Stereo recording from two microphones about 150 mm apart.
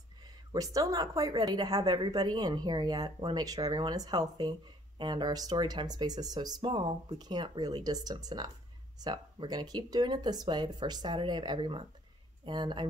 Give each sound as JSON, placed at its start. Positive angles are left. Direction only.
{"t": 0.5, "sound": "a woman's voice", "side_deg": -25}